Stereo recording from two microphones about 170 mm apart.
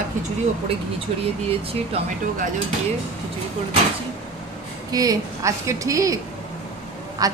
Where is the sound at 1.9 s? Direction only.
35° right (ahead or behind).